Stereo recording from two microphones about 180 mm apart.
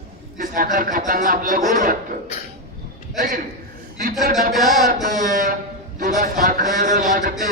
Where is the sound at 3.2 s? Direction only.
50° right (ahead or behind).